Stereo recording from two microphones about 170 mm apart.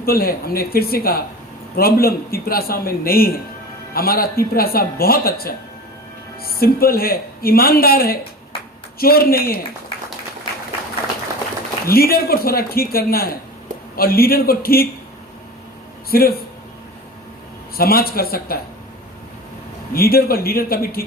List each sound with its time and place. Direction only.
0.0 s a man's voice: 60° left (ahead or behind)
11.9 s a man's voice: 60° left (ahead or behind)
16.0 s speech: 60° left (ahead or behind)
17.7 s a man's voice: 60° left (ahead or behind)
19.9 s a man's voice: 60° left (ahead or behind)